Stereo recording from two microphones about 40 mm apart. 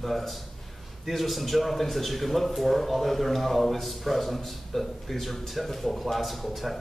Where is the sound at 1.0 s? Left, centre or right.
Centre.